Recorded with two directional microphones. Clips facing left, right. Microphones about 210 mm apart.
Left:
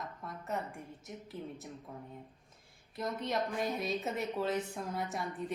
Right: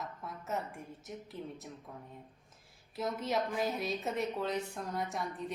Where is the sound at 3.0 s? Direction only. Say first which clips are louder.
Right 1 dB; 5° right (ahead or behind).